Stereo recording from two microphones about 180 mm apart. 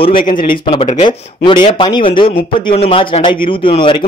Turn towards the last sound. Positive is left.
turn(degrees=30)  # may be behind; listen again after turning